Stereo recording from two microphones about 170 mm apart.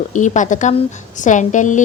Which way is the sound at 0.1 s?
45° left (ahead or behind).